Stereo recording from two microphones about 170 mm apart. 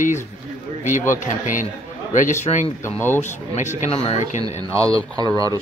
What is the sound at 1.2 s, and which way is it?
Speech, 50° left (ahead or behind).